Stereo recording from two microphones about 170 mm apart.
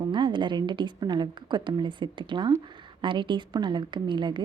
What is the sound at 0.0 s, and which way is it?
A woman's voice, 30° right (ahead or behind).